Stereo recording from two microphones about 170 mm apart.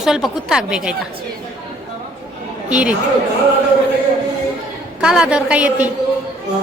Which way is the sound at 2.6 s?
5° right (ahead or behind).